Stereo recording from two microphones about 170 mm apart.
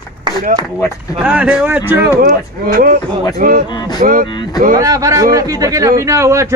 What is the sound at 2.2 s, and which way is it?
Speech, 55° right (ahead or behind).